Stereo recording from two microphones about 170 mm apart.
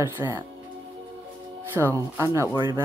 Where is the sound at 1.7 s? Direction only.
15° right (ahead or behind).